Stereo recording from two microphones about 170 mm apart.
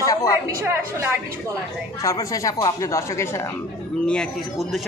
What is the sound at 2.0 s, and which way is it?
Speech, 20° left (ahead or behind).